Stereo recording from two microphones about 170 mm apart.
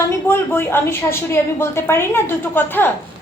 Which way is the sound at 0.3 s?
15° left (ahead or behind).